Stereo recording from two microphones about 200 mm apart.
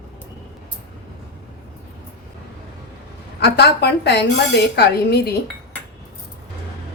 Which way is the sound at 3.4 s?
55° left (ahead or behind).